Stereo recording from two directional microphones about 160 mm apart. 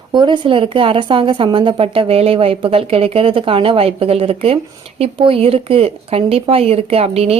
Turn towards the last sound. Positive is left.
turn(degrees=-40)  # may be behind; listen again after turning